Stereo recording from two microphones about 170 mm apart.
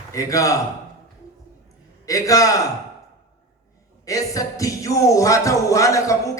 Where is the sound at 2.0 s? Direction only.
20° left (ahead or behind).